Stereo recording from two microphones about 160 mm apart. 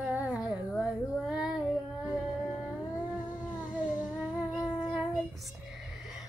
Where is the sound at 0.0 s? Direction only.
10° right (ahead or behind).